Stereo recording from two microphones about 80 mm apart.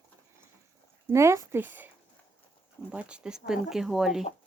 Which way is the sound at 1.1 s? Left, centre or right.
Right.